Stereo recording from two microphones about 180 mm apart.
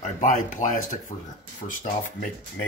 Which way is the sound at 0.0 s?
45° left (ahead or behind).